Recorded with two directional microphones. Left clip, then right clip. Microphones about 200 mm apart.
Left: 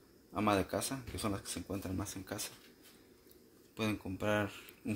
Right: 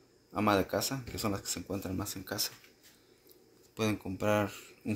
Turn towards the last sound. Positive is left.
turn(degrees=5)  # may be behind; listen again after turning